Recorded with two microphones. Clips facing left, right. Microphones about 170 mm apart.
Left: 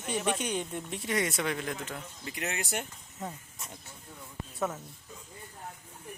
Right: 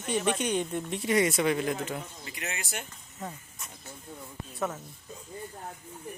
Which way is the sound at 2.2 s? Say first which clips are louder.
Left 3 dB; 55° left (ahead or behind).